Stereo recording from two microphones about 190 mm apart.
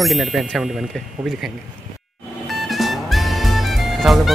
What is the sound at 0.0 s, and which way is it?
Speech, centre (ahead or behind).